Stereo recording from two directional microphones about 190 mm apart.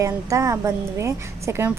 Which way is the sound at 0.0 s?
15° right (ahead or behind).